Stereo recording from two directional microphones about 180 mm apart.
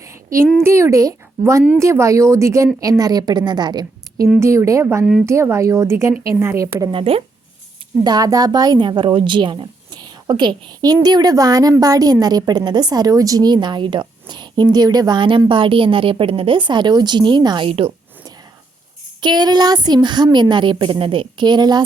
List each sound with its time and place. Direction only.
0.0 s a sound: 15° right (ahead or behind)
0.6 s speech: 15° right (ahead or behind)
6.9 s speech: 30° right (ahead or behind)
8.0 s speech: 20° right (ahead or behind)
19.2 s speech: 25° right (ahead or behind)